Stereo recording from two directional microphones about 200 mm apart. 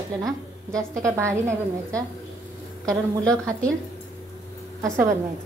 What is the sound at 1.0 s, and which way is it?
Speech, 15° right (ahead or behind).